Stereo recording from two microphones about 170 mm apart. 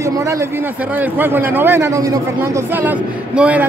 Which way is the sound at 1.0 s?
10° right (ahead or behind).